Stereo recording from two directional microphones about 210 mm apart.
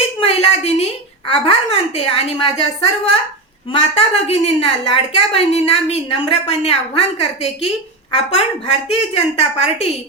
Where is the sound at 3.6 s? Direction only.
30° left (ahead or behind).